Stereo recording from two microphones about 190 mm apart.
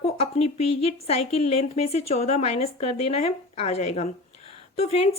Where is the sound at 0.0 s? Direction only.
35° left (ahead or behind).